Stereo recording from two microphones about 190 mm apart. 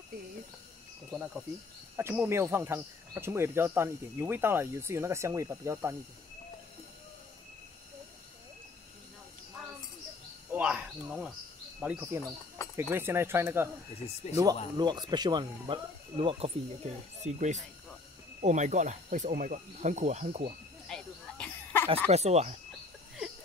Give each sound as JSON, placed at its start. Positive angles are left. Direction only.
{"t": 1.1, "sound": "speech", "side_deg": 0}
{"t": 10.5, "sound": "speech", "side_deg": -5}
{"t": 12.6, "sound": "a sound", "side_deg": 15}
{"t": 12.9, "sound": "speech", "side_deg": -10}
{"t": 20.9, "sound": "a sound", "side_deg": 5}
{"t": 22.1, "sound": "speech", "side_deg": -35}